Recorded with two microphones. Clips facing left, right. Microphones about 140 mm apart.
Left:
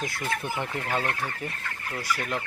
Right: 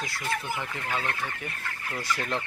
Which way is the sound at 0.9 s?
35° left (ahead or behind).